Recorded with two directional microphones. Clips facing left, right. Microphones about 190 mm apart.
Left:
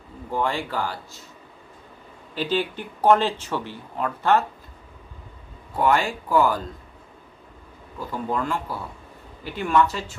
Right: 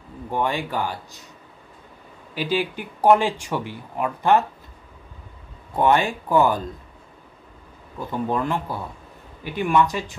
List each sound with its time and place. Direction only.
0.3 s speech: 15° right (ahead or behind)
2.3 s speech: 10° right (ahead or behind)
5.8 s speech: 20° right (ahead or behind)
8.1 s speech: 20° right (ahead or behind)